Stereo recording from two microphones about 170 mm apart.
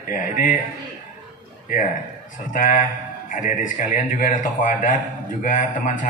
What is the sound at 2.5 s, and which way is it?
A man's voice, 50° left (ahead or behind).